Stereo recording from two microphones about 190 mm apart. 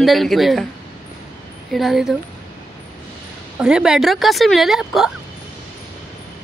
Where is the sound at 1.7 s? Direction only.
Centre (ahead or behind).